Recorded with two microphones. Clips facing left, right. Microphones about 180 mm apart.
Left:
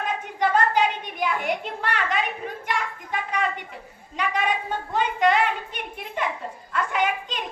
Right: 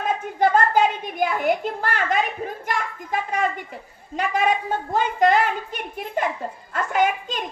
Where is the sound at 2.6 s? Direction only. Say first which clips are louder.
Even; 45° right (ahead or behind).